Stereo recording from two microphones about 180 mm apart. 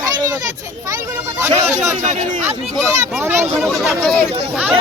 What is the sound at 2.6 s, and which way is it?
Speech, centre (ahead or behind).